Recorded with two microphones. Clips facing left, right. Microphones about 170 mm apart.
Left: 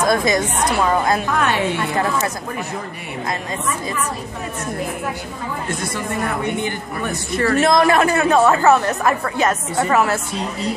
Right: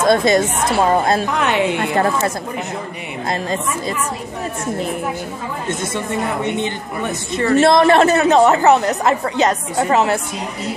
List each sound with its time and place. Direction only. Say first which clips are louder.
0.0 s a woman's voice: right 4 dB; 30° right (ahead or behind)
5.7 s a woman's voice: right 4 dB; 20° right (ahead or behind)